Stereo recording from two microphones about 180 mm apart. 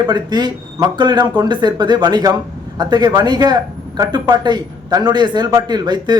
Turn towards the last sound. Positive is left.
turn(degrees=-25)  # may be behind; listen again after turning